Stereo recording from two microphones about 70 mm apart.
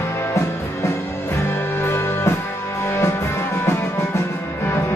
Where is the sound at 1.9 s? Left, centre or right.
Left.